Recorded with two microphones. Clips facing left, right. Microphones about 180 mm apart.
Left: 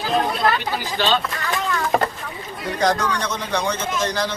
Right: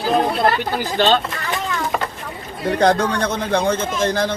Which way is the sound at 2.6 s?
55° right (ahead or behind).